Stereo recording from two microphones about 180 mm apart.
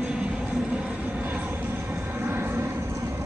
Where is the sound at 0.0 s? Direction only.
5° right (ahead or behind).